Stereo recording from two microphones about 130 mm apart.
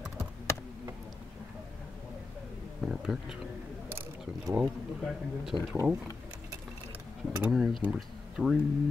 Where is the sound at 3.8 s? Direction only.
20° right (ahead or behind).